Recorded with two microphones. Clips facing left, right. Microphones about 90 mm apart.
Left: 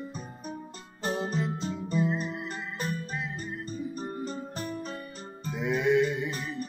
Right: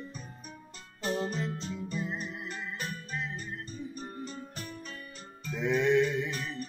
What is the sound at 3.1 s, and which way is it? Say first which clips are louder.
Music: left 1 dB; 5° left (ahead or behind).